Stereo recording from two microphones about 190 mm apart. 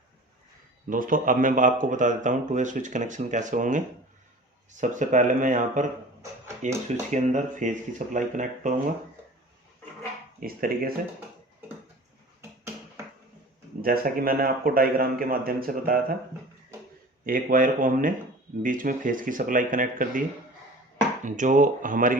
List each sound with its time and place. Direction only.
0.9 s speech: 45° right (ahead or behind)
10.4 s speech: 50° right (ahead or behind)
13.8 s speech: 50° right (ahead or behind)
17.2 s speech: 45° right (ahead or behind)
21.2 s speech: 40° right (ahead or behind)